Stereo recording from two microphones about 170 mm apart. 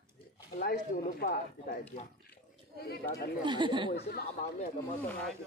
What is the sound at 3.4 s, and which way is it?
Speech, 25° right (ahead or behind).